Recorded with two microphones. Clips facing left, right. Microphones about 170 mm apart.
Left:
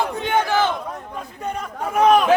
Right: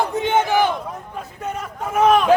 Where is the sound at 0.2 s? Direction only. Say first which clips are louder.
Right 3 dB; 20° right (ahead or behind).